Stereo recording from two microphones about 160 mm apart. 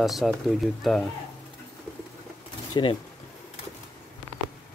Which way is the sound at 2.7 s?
30° left (ahead or behind).